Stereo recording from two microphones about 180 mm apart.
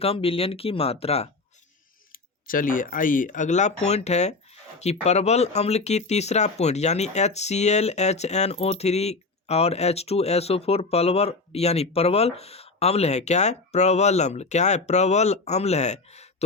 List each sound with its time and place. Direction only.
0.0 s speech: 30° left (ahead or behind)
2.1 s speech: 50° left (ahead or behind)